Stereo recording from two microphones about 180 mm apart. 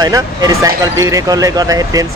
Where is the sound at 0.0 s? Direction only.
20° right (ahead or behind).